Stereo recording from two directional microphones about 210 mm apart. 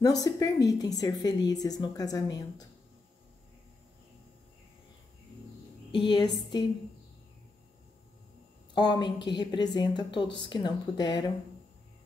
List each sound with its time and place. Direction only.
0.0 s a woman's voice: 15° left (ahead or behind)
5.9 s a woman's voice: 20° left (ahead or behind)
8.7 s a woman's voice: 20° left (ahead or behind)